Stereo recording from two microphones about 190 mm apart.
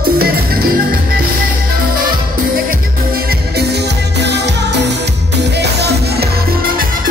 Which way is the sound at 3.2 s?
60° right (ahead or behind).